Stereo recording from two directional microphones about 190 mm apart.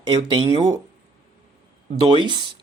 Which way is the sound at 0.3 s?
30° right (ahead or behind).